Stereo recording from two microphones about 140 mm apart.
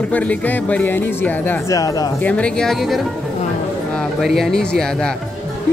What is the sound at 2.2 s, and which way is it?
Speech, 10° left (ahead or behind).